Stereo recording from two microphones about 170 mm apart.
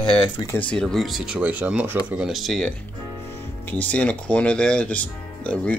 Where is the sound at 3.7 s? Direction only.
10° left (ahead or behind).